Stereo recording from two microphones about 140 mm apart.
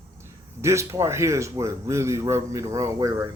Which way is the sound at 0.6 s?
20° right (ahead or behind).